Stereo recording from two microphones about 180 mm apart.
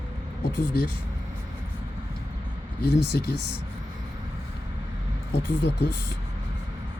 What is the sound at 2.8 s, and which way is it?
Speech, 65° left (ahead or behind).